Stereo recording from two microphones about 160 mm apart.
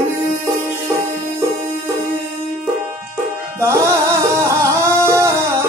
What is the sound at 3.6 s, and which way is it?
Music, 15° right (ahead or behind).